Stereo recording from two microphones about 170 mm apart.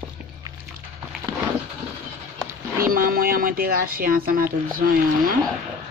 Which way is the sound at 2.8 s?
60° right (ahead or behind).